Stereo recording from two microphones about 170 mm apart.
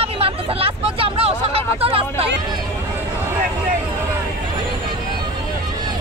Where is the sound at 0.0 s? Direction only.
35° right (ahead or behind).